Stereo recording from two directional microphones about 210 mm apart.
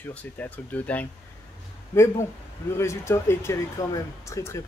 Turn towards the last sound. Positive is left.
turn(degrees=15)  # may be behind; listen again after turning